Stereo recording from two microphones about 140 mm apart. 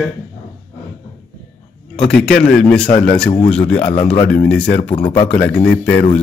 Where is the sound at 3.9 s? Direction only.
45° left (ahead or behind).